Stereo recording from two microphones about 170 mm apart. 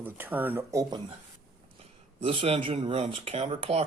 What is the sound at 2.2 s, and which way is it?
Speech, 30° right (ahead or behind).